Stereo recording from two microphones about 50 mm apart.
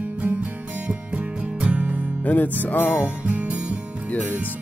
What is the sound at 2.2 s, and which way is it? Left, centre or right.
Speech, left.